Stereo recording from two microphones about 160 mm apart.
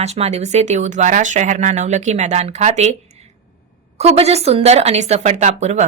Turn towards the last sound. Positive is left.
turn(degrees=-45)  # may be behind; listen again after turning